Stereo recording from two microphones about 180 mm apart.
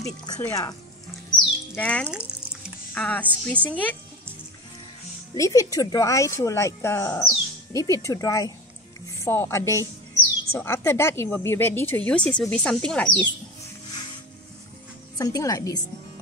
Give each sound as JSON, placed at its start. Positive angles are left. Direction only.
{"t": 0.0, "sound": "speech", "side_deg": 15}
{"t": 2.0, "sound": "music", "side_deg": -5}
{"t": 2.9, "sound": "speech", "side_deg": 10}
{"t": 5.3, "sound": "speech", "side_deg": 20}
{"t": 15.1, "sound": "speech", "side_deg": 20}